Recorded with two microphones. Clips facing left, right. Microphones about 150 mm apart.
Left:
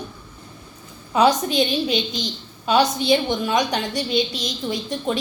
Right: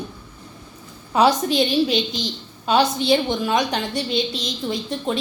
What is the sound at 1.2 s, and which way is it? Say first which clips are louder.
A woman's voice: even; 5° right (ahead or behind).